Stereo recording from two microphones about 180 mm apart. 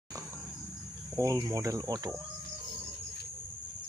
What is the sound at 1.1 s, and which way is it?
Speech, 20° right (ahead or behind).